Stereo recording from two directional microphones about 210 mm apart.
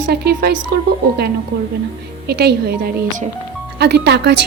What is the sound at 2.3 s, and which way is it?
Speech, 50° right (ahead or behind).